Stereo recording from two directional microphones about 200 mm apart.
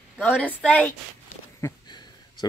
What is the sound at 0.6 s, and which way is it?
Speech, 5° left (ahead or behind).